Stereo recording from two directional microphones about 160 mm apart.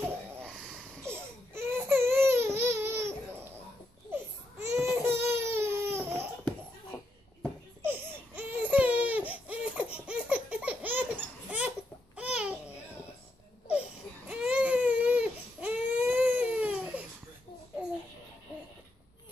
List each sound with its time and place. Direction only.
1.0 s baby cry: 15° right (ahead or behind)
4.1 s baby cry: 15° right (ahead or behind)
7.8 s baby cry: 10° right (ahead or behind)
12.2 s babbling: 5° right (ahead or behind)
13.7 s baby cry: 5° right (ahead or behind)